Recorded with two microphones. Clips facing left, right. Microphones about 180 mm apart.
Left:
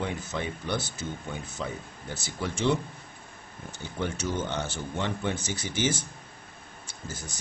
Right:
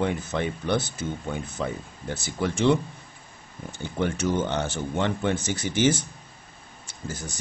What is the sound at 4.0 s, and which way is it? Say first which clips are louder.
Speech: right 6 dB; 65° right (ahead or behind).